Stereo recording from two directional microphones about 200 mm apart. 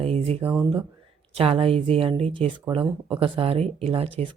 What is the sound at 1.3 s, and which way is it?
Speech, 30° right (ahead or behind).